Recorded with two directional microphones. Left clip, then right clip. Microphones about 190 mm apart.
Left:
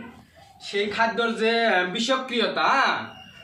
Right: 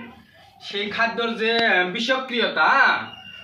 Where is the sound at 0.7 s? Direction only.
10° left (ahead or behind).